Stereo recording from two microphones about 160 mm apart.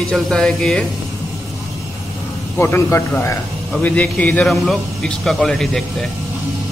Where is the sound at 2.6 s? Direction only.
15° left (ahead or behind).